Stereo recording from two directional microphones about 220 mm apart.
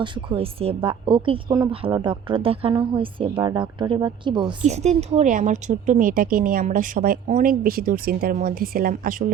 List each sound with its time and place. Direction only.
0.0 s a woman's voice: 25° right (ahead or behind); by 9.2 s 40° right (ahead or behind)